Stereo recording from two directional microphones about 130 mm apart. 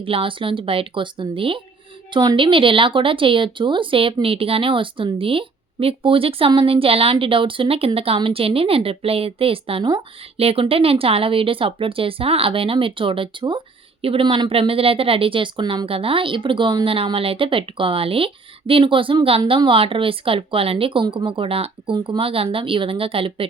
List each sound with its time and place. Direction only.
0.0 s speech: 45° right (ahead or behind)